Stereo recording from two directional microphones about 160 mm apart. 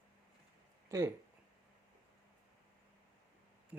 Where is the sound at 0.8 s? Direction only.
20° right (ahead or behind).